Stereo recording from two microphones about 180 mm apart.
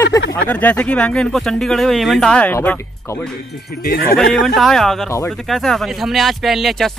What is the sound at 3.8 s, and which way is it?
Speech, 55° left (ahead or behind).